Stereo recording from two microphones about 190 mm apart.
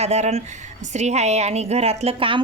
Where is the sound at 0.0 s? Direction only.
35° right (ahead or behind).